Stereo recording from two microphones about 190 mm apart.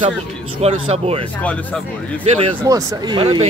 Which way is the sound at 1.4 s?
5° left (ahead or behind).